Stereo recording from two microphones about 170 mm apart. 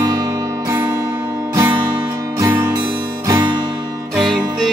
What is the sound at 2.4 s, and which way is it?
Music, 15° right (ahead or behind).